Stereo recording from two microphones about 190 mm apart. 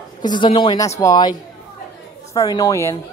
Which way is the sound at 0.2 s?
25° left (ahead or behind).